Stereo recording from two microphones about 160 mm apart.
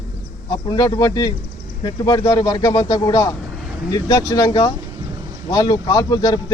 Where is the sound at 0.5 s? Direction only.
25° left (ahead or behind).